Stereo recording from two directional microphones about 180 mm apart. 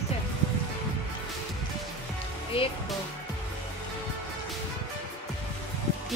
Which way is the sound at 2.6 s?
30° left (ahead or behind).